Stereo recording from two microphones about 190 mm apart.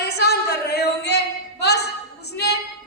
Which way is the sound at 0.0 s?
60° left (ahead or behind).